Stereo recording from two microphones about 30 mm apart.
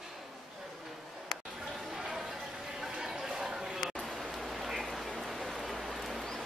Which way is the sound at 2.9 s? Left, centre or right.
Right.